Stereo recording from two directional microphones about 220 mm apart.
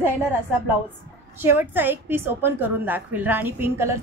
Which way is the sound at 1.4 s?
10° right (ahead or behind).